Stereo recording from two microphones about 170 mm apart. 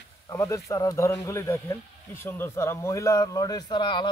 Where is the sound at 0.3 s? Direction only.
20° left (ahead or behind).